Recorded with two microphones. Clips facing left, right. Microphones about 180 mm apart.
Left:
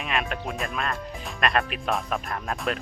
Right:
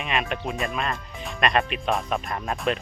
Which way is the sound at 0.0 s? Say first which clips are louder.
Right 2 dB; centre (ahead or behind).